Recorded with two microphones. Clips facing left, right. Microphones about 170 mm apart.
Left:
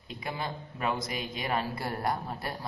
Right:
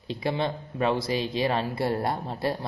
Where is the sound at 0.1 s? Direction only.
30° right (ahead or behind).